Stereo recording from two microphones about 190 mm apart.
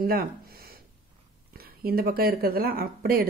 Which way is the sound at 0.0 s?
50° right (ahead or behind).